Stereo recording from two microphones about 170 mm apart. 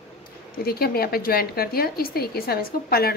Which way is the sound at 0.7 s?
65° left (ahead or behind).